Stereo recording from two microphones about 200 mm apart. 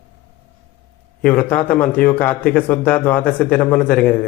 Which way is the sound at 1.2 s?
10° left (ahead or behind).